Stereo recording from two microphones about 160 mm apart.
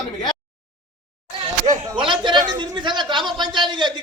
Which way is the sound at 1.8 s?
30° right (ahead or behind).